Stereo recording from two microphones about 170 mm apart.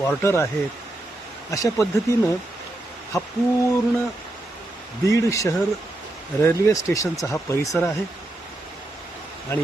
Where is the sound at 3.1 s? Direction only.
20° left (ahead or behind).